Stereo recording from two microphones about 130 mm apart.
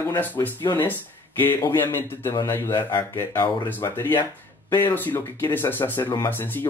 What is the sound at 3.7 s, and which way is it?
Speech, 15° left (ahead or behind).